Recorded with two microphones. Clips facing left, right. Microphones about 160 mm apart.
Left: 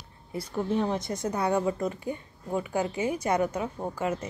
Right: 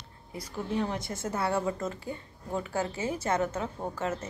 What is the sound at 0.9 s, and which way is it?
A woman's voice, 20° left (ahead or behind).